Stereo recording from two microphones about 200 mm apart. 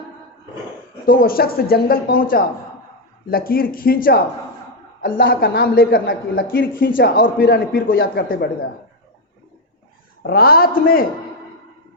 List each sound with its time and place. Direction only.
1.0 s a man's voice: 45° left (ahead or behind)
10.2 s a man's voice: 50° left (ahead or behind)